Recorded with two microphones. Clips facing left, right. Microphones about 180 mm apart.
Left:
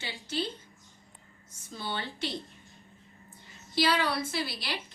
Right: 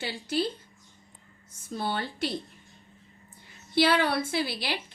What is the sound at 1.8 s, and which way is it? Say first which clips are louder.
Speech: right 5 dB; 55° right (ahead or behind).